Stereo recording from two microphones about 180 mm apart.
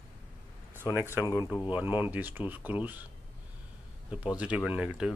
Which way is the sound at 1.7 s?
10° right (ahead or behind).